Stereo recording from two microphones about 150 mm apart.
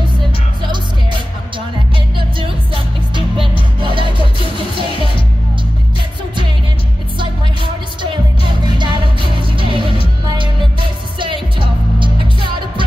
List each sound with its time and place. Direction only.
2.1 s music: 35° right (ahead or behind)
7.2 s music: 30° right (ahead or behind)